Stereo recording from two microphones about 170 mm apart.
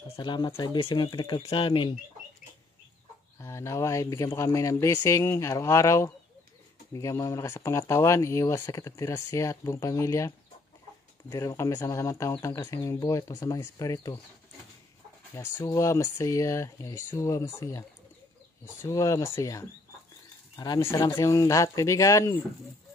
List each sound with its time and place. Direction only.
0.2 s speech: 25° left (ahead or behind)
3.3 s speech: 15° left (ahead or behind)
15.3 s speech: 15° left (ahead or behind)